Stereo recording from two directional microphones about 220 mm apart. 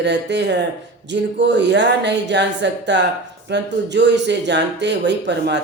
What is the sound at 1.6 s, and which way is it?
Speech, 50° right (ahead or behind).